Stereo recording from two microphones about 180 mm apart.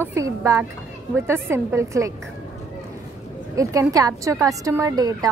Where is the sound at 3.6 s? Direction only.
20° right (ahead or behind).